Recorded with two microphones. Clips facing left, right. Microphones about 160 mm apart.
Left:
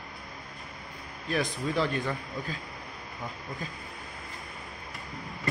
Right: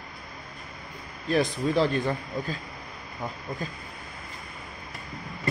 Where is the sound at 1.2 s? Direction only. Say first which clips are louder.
Right 5 dB; 30° right (ahead or behind).